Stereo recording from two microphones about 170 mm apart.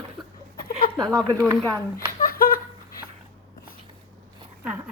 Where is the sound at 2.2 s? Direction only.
60° left (ahead or behind).